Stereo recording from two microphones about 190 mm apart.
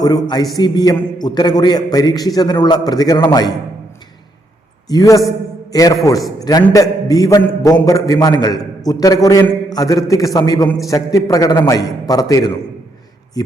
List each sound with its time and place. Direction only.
0.0 s a man's voice: 20° left (ahead or behind)
4.9 s a man's voice: 20° left (ahead or behind)